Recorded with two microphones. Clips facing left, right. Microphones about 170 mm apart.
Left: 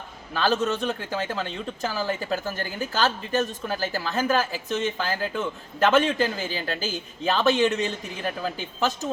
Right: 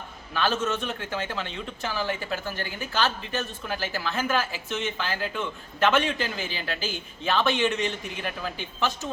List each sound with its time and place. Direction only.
0.3 s speech: 35° left (ahead or behind)